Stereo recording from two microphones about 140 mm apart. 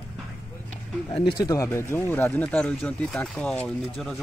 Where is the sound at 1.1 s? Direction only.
40° left (ahead or behind).